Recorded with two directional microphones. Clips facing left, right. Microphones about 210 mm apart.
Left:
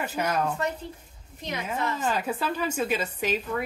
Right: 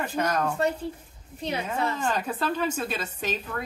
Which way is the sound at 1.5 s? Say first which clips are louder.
Right 1 dB; 30° right (ahead or behind).